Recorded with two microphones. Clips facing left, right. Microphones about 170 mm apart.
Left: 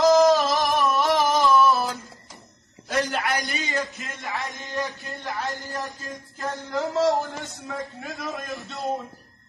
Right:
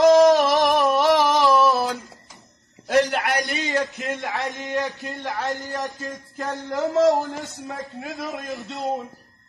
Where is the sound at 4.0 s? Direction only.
65° right (ahead or behind).